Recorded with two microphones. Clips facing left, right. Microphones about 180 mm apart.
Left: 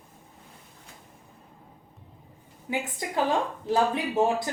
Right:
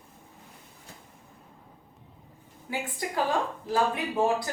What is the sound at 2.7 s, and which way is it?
Speech, 20° left (ahead or behind).